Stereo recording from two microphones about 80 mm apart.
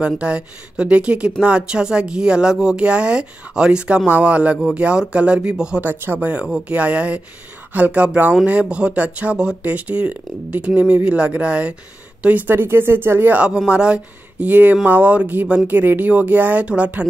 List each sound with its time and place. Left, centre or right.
0.0 s speech: centre
5.8 s speech: right
6.1 s speech: centre
13.7 s speech: centre